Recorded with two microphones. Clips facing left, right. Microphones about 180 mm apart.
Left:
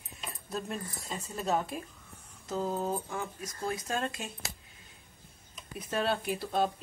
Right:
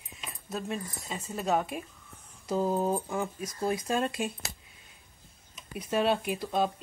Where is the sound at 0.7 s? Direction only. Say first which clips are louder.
Right 2 dB; 5° right (ahead or behind).